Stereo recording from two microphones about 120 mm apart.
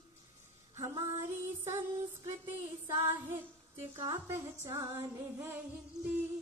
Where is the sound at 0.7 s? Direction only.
30° right (ahead or behind).